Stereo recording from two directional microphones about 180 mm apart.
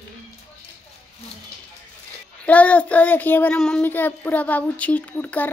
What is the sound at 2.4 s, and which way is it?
Child singing, 10° left (ahead or behind).